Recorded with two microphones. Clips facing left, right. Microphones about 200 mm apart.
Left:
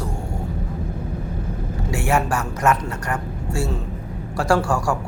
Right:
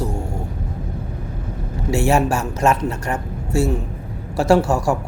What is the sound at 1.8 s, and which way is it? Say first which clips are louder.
Speech: right 5 dB; 25° right (ahead or behind).